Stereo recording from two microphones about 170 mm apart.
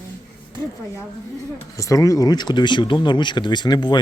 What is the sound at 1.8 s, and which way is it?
Speech, 20° left (ahead or behind).